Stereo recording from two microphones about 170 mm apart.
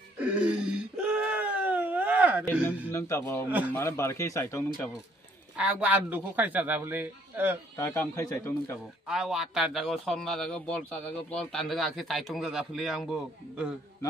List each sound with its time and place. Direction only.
0.2 s whimper: 5° right (ahead or behind)
2.9 s speech: 15° left (ahead or behind)
3.4 s a man's voice: 10° right (ahead or behind)
3.7 s speech: 15° left (ahead or behind)
5.6 s a man's voice: 5° right (ahead or behind)
7.7 s speech: 15° left (ahead or behind)
9.0 s speech: 5° right (ahead or behind)